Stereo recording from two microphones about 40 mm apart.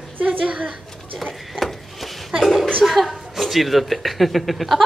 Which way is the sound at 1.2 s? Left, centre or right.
Centre.